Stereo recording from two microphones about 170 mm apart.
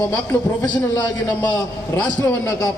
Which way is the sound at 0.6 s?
20° left (ahead or behind).